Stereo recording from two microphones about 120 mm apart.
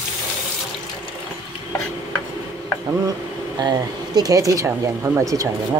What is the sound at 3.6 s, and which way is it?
Speech, 35° right (ahead or behind).